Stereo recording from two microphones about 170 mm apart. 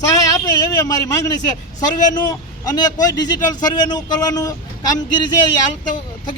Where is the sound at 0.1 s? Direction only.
20° left (ahead or behind).